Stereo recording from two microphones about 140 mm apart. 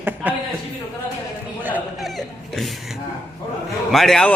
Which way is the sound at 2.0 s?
Centre (ahead or behind).